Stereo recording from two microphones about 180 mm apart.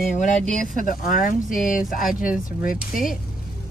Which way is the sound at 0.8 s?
50° left (ahead or behind).